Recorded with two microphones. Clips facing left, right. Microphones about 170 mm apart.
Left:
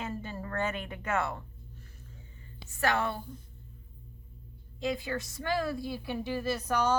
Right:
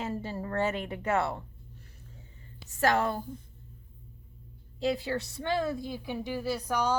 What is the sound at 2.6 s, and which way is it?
Speech, 40° right (ahead or behind).